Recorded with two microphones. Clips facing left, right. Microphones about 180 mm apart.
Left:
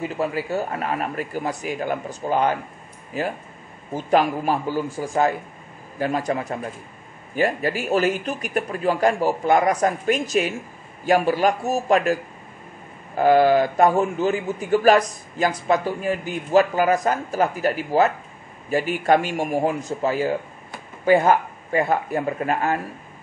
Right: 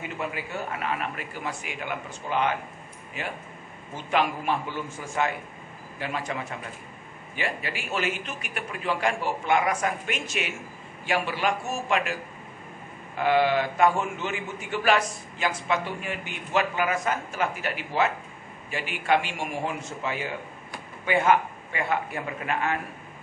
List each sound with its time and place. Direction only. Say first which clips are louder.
0.2 s a man's voice: left 8 dB; 35° left (ahead or behind)